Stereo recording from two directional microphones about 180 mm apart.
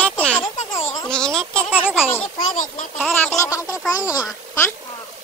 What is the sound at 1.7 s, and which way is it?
Speech, 5° right (ahead or behind).